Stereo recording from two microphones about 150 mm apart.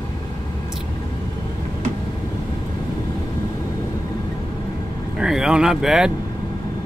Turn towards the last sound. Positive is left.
turn(degrees=-5)  # may be behind; listen again after turning